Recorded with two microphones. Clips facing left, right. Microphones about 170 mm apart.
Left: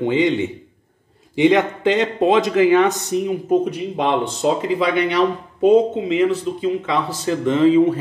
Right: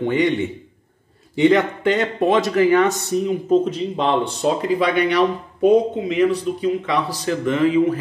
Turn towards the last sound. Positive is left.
turn(degrees=25)  # may be behind; listen again after turning